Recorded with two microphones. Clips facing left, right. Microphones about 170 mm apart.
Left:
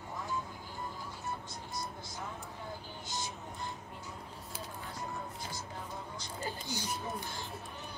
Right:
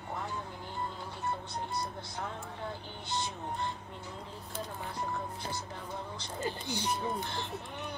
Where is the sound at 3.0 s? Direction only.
65° right (ahead or behind).